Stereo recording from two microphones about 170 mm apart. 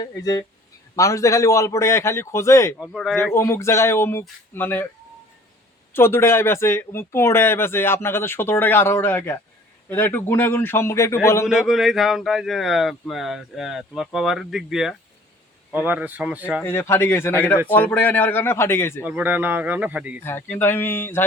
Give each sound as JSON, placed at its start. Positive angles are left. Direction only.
{"t": 0.0, "sound": "speech", "side_deg": 20}
{"t": 2.8, "sound": "speech", "side_deg": 0}
{"t": 3.3, "sound": "speech", "side_deg": 15}
{"t": 5.9, "sound": "speech", "side_deg": 15}
{"t": 11.4, "sound": "speech", "side_deg": -5}
{"t": 16.6, "sound": "speech", "side_deg": 15}
{"t": 19.0, "sound": "speech", "side_deg": -10}
{"t": 20.2, "sound": "speech", "side_deg": 10}